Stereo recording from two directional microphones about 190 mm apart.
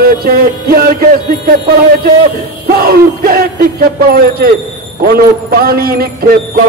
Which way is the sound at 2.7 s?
50° right (ahead or behind).